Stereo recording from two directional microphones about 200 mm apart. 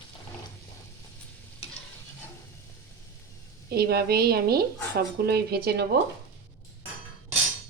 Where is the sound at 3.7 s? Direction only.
50° right (ahead or behind).